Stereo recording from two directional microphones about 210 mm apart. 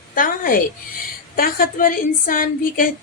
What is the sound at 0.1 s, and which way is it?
A woman's voice, 40° left (ahead or behind).